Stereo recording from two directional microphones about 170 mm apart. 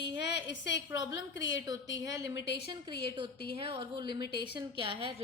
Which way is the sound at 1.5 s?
25° right (ahead or behind).